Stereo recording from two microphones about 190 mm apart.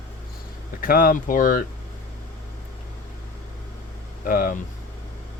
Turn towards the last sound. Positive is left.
turn(degrees=45)  # may be behind; listen again after turning